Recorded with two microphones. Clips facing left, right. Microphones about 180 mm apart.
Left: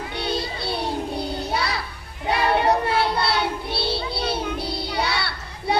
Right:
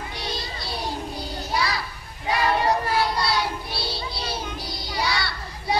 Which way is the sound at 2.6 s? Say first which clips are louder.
Left 2 dB; 65° left (ahead or behind).